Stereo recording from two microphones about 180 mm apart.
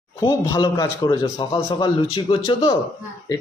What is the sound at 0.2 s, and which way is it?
Speech, 20° left (ahead or behind).